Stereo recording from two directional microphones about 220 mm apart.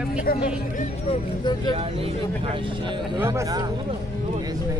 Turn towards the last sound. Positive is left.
turn(degrees=-15)  # may be behind; listen again after turning